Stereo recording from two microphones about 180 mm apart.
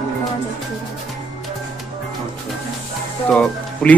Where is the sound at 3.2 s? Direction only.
5° left (ahead or behind).